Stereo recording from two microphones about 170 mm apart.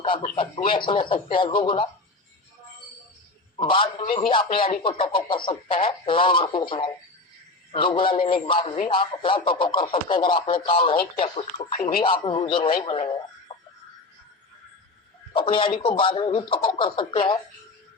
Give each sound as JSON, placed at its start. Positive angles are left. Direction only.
{"t": 0.0, "sound": "speech", "side_deg": 30}
{"t": 3.6, "sound": "a man's voice", "side_deg": 30}
{"t": 13.5, "sound": "a sound", "side_deg": 35}
{"t": 15.3, "sound": "a man's voice", "side_deg": 30}